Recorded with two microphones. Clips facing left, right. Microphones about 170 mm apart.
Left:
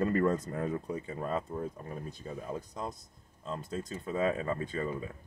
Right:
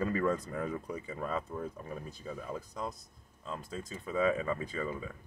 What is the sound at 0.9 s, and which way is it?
Speech, 40° left (ahead or behind).